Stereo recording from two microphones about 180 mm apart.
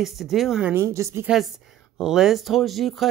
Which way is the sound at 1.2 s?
Centre (ahead or behind).